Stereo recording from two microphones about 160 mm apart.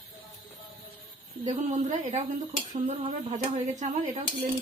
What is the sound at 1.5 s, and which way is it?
Speech, 50° right (ahead or behind).